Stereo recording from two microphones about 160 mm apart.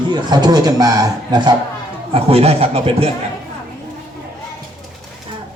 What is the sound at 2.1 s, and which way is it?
Speech, 40° right (ahead or behind).